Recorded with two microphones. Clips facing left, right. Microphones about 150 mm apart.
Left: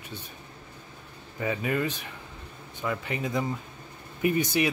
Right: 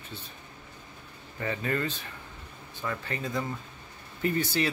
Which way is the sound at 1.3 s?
10° left (ahead or behind).